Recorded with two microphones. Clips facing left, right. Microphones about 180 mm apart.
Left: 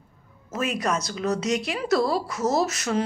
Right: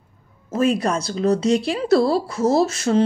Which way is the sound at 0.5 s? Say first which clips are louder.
Right 7 dB; 30° right (ahead or behind).